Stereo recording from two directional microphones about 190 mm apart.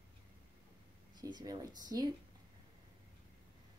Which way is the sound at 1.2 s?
20° right (ahead or behind).